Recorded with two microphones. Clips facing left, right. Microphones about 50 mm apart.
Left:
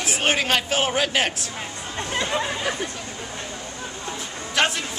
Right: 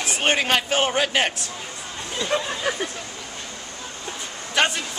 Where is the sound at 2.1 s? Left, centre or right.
Left.